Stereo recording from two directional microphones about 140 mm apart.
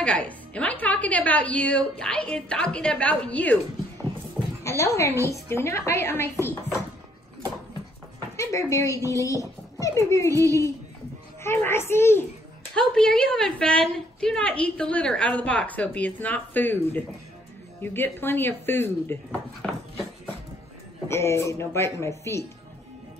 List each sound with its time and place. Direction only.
0.0 s a woman's voice: 10° left (ahead or behind)
4.6 s speech: 20° left (ahead or behind)
8.4 s a woman's voice: 20° left (ahead or behind)
12.7 s a woman's voice: 5° left (ahead or behind)
21.1 s speech: 20° left (ahead or behind)